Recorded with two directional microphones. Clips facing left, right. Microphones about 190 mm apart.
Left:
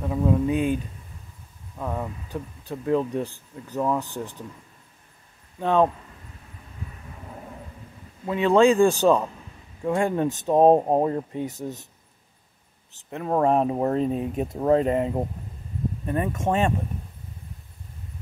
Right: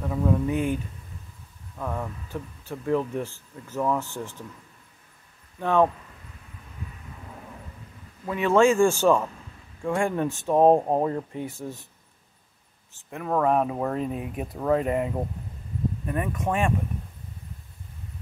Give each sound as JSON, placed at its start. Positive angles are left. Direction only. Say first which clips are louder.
{"t": 0.0, "sound": "speech", "louder": "left 2 dB", "side_deg": 15}
{"t": 1.8, "sound": "speech", "louder": "left 1 dB", "side_deg": 15}
{"t": 5.6, "sound": "speech", "louder": "left 1 dB", "side_deg": 20}
{"t": 8.3, "sound": "speech", "louder": "left 2 dB", "side_deg": 20}
{"t": 13.1, "sound": "speech", "louder": "left 2 dB", "side_deg": 25}